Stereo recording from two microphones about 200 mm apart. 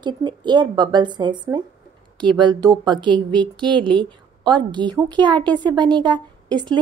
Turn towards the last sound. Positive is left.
turn(degrees=-20)  # may be behind; listen again after turning